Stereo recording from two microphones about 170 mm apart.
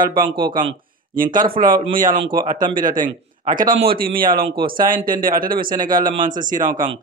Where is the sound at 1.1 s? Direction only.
55° right (ahead or behind).